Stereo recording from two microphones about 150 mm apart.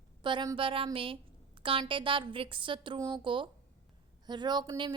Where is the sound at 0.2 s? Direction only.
30° right (ahead or behind).